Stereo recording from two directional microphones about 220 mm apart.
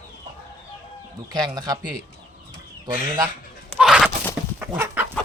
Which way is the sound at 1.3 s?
20° right (ahead or behind).